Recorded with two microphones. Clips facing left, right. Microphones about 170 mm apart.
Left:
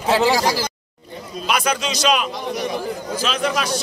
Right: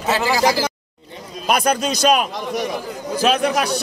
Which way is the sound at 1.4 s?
50° right (ahead or behind).